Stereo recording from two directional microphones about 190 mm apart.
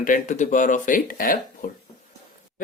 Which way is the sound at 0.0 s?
45° left (ahead or behind).